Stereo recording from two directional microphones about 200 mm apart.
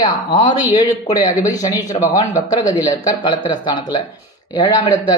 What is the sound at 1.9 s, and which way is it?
Speech, 30° left (ahead or behind).